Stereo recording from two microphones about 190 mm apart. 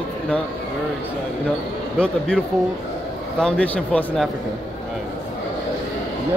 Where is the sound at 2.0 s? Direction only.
5° left (ahead or behind).